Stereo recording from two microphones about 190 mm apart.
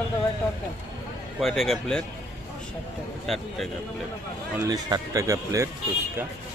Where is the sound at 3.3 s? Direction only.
Centre (ahead or behind).